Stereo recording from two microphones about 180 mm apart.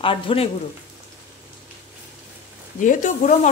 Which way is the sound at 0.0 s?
30° left (ahead or behind).